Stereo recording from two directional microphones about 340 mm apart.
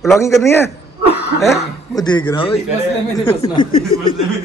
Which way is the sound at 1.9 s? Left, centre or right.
Centre.